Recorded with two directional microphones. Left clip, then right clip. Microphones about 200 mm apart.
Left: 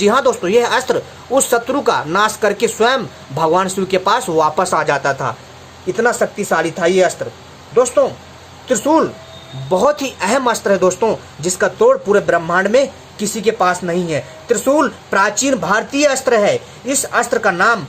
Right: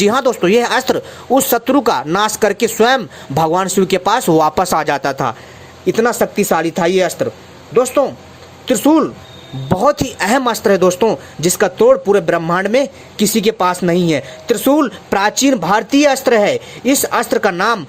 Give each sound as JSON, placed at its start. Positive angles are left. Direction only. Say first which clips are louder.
{"t": 0.0, "sound": "speech", "louder": "even", "side_deg": -40}